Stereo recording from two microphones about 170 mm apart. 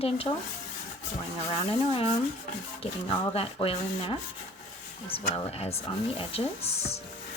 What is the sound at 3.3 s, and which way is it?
Speech, 35° left (ahead or behind).